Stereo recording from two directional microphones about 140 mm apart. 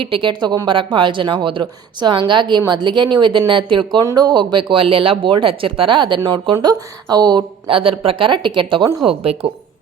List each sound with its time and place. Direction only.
0.0 s speech: 40° right (ahead or behind)